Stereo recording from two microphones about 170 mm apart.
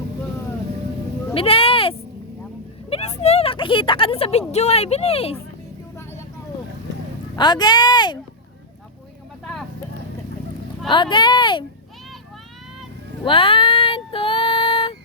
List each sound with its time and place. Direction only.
1.3 s sheep: 35° left (ahead or behind)
3.2 s a woman's voice: 35° left (ahead or behind)
7.3 s speech: 25° left (ahead or behind)
9.4 s vehicle: 5° left (ahead or behind)
10.8 s speech: 30° left (ahead or behind)
13.2 s child singing: 30° left (ahead or behind)